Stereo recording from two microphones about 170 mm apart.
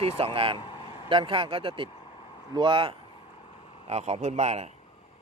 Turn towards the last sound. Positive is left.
turn(degrees=-40)  # may be behind; listen again after turning